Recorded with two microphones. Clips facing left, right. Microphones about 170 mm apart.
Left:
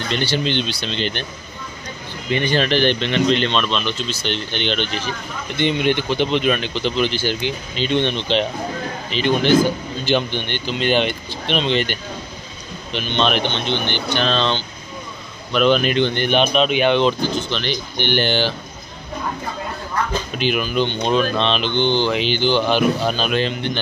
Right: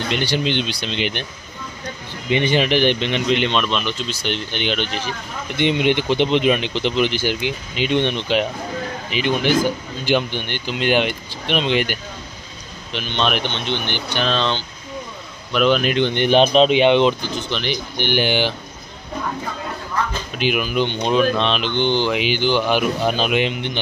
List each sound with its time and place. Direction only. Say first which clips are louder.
0.1 s speech: left 1 dB; 15° right (ahead or behind)
2.3 s speech: right 1 dB; 20° right (ahead or behind)
5.6 s speech: right 1 dB; 20° right (ahead or behind)
16.3 s speech: right 8 dB; 30° right (ahead or behind); by 18.5 s 10° right (ahead or behind)
20.3 s speech: right 1 dB; 5° right (ahead or behind)